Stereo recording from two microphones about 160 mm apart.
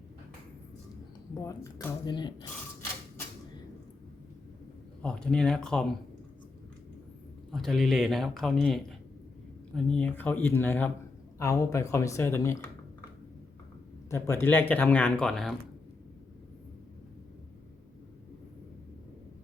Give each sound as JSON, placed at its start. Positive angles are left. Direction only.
{"t": 1.4, "sound": "speech", "side_deg": 20}
{"t": 5.0, "sound": "speech", "side_deg": 5}
{"t": 7.5, "sound": "speech", "side_deg": 0}
{"t": 14.1, "sound": "speech", "side_deg": 15}